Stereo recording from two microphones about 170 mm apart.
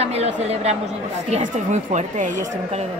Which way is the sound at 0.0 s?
40° right (ahead or behind).